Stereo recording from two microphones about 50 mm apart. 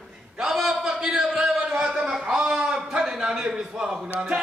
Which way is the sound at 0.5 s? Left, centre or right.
Centre.